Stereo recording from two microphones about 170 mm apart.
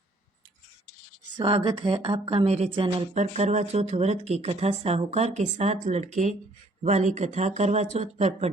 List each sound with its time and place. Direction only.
1.4 s speech: 30° right (ahead or behind)
3.2 s speech: 40° right (ahead or behind)